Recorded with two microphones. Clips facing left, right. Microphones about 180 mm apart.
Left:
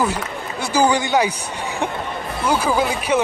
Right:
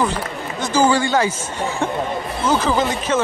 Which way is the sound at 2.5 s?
10° left (ahead or behind).